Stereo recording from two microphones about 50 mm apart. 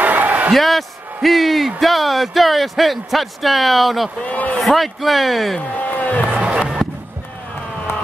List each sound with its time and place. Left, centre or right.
0.0 s a sound: right
0.6 s a man's voice: centre
4.2 s a man's voice: left
4.6 s speech: centre
5.8 s speech: left
6.3 s music: right